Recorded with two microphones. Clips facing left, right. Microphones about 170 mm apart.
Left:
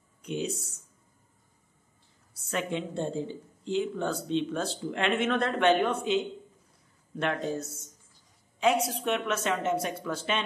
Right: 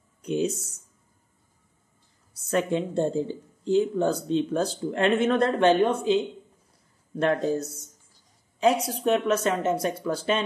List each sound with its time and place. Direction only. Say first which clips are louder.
0.2 s a sound: right 7 dB; 40° right (ahead or behind)
2.5 s speech: right 7 dB; 40° right (ahead or behind)
7.2 s speech: right 6 dB; 35° right (ahead or behind)